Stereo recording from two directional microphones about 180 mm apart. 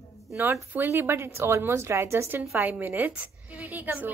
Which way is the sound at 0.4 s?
10° right (ahead or behind).